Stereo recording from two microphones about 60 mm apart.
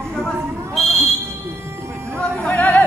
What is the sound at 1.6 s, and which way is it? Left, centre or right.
Music, right.